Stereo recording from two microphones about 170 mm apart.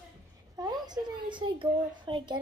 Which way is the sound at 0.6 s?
25° right (ahead or behind).